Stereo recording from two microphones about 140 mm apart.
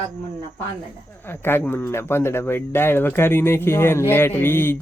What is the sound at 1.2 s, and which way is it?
Speech, 15° left (ahead or behind).